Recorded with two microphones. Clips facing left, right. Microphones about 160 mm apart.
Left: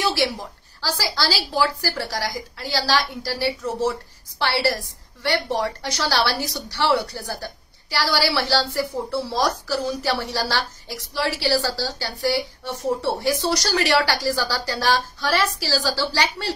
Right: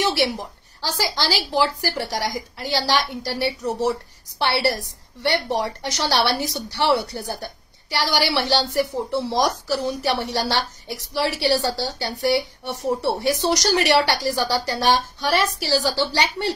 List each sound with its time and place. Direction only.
0.0 s a woman's voice: 20° right (ahead or behind)